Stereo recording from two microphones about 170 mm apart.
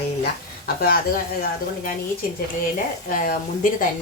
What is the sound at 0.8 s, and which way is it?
Speech, 60° left (ahead or behind).